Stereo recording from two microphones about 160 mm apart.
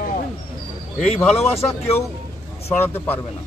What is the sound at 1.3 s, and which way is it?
Speech, 40° left (ahead or behind).